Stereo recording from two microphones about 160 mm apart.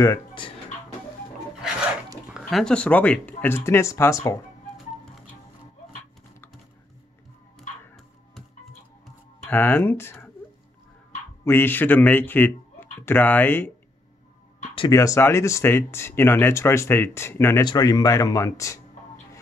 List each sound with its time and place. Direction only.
0.0 s speech: 25° left (ahead or behind)
2.2 s speech: centre (ahead or behind); by 4.2 s 20° left (ahead or behind)
7.5 s music: centre (ahead or behind)
9.5 s speech: 10° left (ahead or behind)
11.4 s speech: 15° left (ahead or behind)
14.9 s speech: 20° left (ahead or behind)